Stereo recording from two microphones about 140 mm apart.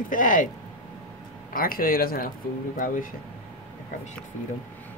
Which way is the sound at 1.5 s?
90° left.